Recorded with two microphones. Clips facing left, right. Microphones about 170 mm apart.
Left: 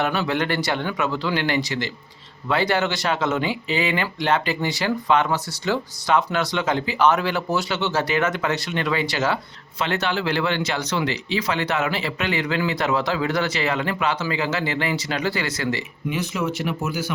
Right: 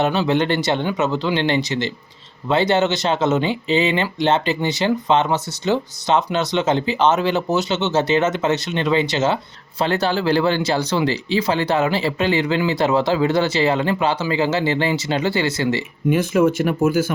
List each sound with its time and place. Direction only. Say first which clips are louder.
0.0 s speech: right 5 dB; 25° right (ahead or behind)
16.0 s speech: right 9 dB; 50° right (ahead or behind)